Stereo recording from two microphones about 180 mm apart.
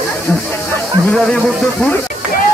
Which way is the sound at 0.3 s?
10° left (ahead or behind).